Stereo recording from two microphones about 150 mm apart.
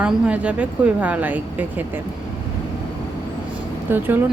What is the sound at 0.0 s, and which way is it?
A woman's voice, 10° right (ahead or behind).